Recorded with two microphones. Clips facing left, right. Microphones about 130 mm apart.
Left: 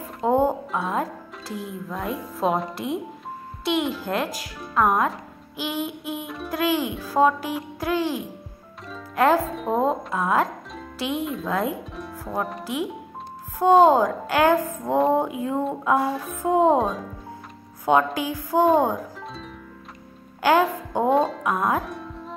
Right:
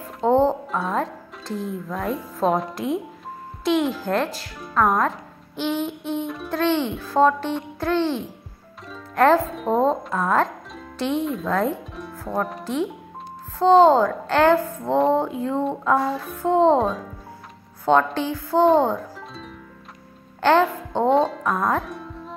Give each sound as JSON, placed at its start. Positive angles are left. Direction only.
{"t": 0.2, "sound": "speech", "side_deg": 10}
{"t": 2.4, "sound": "music", "side_deg": 0}
{"t": 7.0, "sound": "a woman's voice", "side_deg": 10}
{"t": 16.8, "sound": "music", "side_deg": 0}
{"t": 17.8, "sound": "a woman's voice", "side_deg": 10}
{"t": 20.4, "sound": "a woman's voice", "side_deg": 10}
{"t": 21.8, "sound": "music", "side_deg": 0}